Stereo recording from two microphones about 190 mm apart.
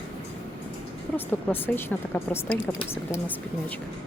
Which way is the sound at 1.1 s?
10° left (ahead or behind).